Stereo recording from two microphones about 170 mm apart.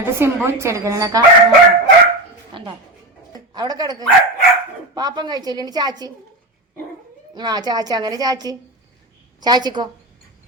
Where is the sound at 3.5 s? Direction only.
25° right (ahead or behind).